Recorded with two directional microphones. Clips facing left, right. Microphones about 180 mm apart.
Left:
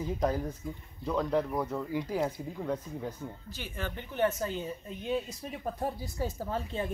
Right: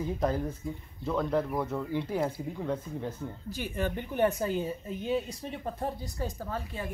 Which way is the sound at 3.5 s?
10° right (ahead or behind).